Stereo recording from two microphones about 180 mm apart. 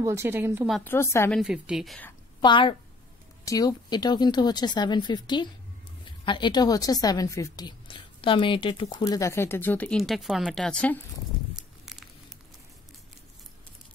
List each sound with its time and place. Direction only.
0.0 s speech: 15° right (ahead or behind)
0.8 s a woman's voice: 15° left (ahead or behind)
1.3 s a woman's voice: 5° right (ahead or behind)
2.4 s a woman's voice: 25° left (ahead or behind); by 11.0 s 5° left (ahead or behind)